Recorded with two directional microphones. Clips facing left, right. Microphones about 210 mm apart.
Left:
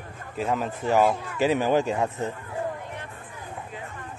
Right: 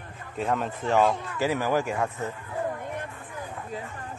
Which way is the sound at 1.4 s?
20° left (ahead or behind).